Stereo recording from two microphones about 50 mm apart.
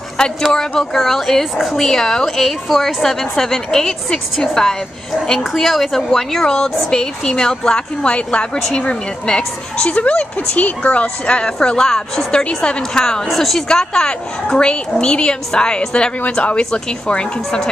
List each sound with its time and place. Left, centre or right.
0.5 s a woman's voice: centre
13.7 s a woman's voice: centre